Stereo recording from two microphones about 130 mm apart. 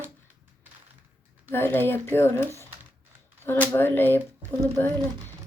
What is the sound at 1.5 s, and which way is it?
Speech, 15° left (ahead or behind).